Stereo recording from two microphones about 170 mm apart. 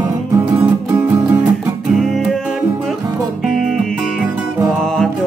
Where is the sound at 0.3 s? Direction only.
15° right (ahead or behind).